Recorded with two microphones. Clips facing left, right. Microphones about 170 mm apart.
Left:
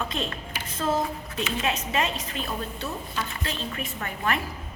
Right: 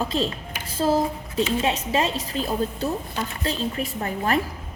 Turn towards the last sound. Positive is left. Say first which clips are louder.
# right 5 dB
turn(degrees=-35)  # may be behind; listen again after turning